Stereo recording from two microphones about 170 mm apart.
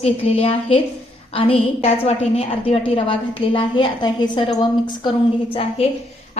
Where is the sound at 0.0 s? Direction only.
35° left (ahead or behind).